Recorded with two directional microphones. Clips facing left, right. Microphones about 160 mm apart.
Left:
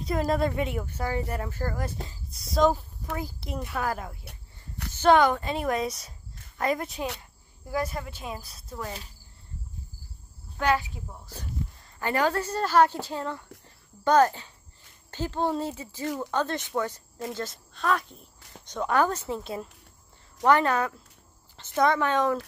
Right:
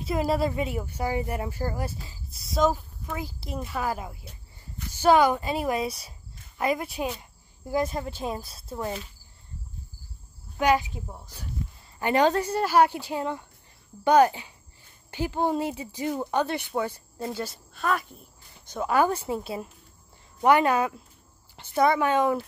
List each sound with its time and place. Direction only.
0.0 s speech: 5° right (ahead or behind)
2.0 s speech: centre (ahead or behind)
4.2 s snake: 65° left (ahead or behind)
4.9 s speech: 10° right (ahead or behind)
7.2 s speech: 20° right (ahead or behind)
10.6 s speech: 15° right (ahead or behind)